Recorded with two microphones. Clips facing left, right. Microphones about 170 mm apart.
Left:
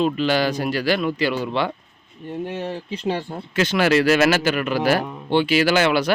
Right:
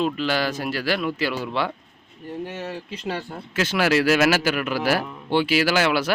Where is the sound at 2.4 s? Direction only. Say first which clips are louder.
Left 4 dB; 30° left (ahead or behind).